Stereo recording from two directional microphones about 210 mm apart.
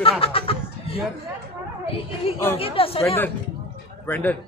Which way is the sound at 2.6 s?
25° left (ahead or behind).